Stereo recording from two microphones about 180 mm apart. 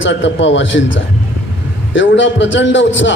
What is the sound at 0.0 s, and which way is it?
A man's voice, 90° left.